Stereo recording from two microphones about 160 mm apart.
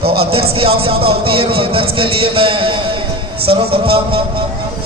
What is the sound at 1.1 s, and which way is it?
A man's voice, 35° right (ahead or behind).